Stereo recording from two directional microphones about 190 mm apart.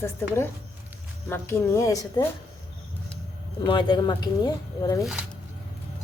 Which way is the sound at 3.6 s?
25° left (ahead or behind).